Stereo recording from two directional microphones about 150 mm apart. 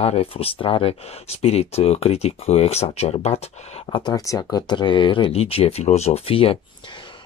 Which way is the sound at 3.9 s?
30° left (ahead or behind).